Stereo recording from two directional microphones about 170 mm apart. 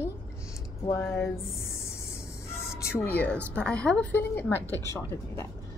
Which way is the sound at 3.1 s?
10° left (ahead or behind).